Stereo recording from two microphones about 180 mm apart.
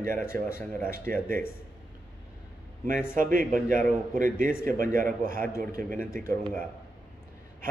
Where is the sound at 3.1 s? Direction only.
50° right (ahead or behind).